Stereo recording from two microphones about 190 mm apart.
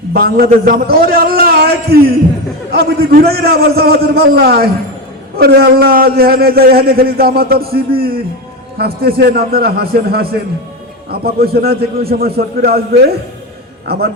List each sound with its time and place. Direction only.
0.1 s a man's voice: 55° right (ahead or behind)